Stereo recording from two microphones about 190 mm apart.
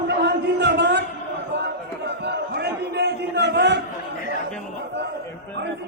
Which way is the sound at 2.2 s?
60° right (ahead or behind).